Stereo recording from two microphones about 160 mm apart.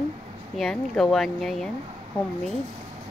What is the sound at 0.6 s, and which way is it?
Speech, 5° left (ahead or behind).